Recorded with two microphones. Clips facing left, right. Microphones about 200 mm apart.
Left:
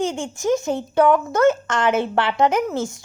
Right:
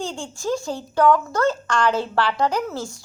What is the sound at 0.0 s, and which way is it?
Speech, 20° left (ahead or behind).